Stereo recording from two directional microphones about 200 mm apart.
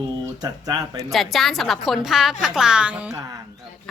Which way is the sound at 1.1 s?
Centre (ahead or behind).